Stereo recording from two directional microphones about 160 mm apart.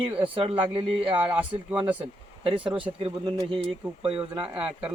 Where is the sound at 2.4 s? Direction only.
35° right (ahead or behind).